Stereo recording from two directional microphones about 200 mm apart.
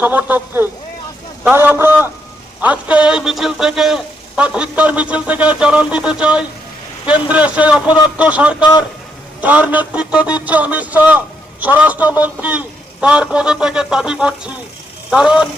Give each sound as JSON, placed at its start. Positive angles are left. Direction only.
{"t": 0.0, "sound": "a man's voice", "side_deg": -10}
{"t": 8.5, "sound": "a man's voice", "side_deg": 20}
{"t": 9.4, "sound": "a man's voice", "side_deg": -5}